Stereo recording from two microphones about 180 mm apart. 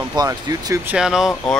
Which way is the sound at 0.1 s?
20° right (ahead or behind).